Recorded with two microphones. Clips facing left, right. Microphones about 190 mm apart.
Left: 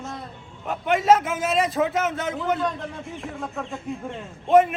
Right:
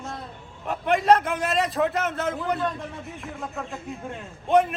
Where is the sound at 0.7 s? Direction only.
Centre (ahead or behind).